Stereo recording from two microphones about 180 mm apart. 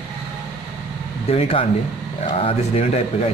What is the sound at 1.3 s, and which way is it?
Speech, 35° left (ahead or behind).